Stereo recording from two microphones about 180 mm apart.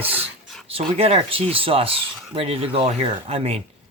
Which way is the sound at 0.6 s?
35° right (ahead or behind).